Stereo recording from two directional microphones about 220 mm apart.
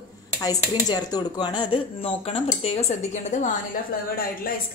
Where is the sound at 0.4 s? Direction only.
15° left (ahead or behind).